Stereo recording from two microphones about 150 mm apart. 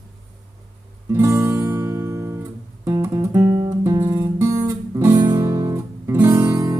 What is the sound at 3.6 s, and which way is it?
Guitar, 20° right (ahead or behind).